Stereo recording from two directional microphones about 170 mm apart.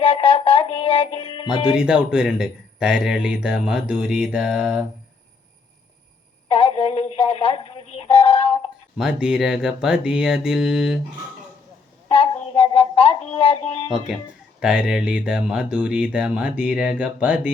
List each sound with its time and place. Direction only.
0.0 s music: 30° left (ahead or behind)
1.7 s speech: 5° right (ahead or behind)
6.5 s music: 35° left (ahead or behind)
9.0 s speech: 5° right (ahead or behind)
12.0 s a sound: 30° left (ahead or behind)
14.6 s speech: 5° right (ahead or behind)